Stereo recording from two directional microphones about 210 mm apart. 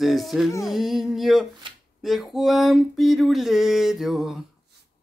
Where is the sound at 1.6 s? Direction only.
25° right (ahead or behind).